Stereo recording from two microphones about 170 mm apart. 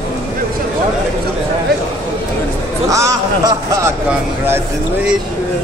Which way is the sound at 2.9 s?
20° right (ahead or behind).